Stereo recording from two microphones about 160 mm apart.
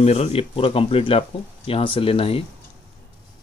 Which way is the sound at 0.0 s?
40° left (ahead or behind).